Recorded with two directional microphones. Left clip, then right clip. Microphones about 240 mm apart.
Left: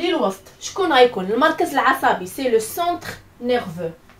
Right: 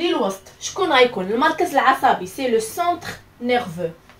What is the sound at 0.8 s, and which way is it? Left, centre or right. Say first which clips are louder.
Speech: left 1 dB; centre.